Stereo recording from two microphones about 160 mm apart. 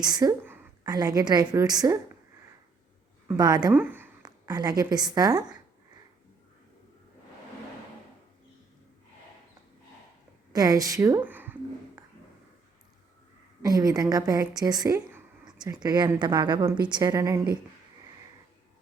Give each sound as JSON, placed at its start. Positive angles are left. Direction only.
{"t": 0.0, "sound": "a woman's voice", "side_deg": -25}
{"t": 3.3, "sound": "a woman's voice", "side_deg": -25}
{"t": 3.7, "sound": "a sound", "side_deg": -10}
{"t": 4.3, "sound": "a sound", "side_deg": -25}
{"t": 4.8, "sound": "a woman's voice", "side_deg": -25}
{"t": 10.5, "sound": "a woman's voice", "side_deg": -25}
{"t": 13.6, "sound": "a woman's voice", "side_deg": -25}